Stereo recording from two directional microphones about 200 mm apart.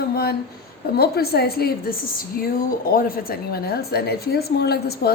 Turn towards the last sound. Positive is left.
turn(degrees=50)  # may be behind; listen again after turning